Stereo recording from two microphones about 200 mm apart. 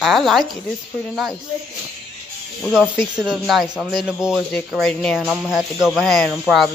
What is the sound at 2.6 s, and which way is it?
Speech, centre (ahead or behind).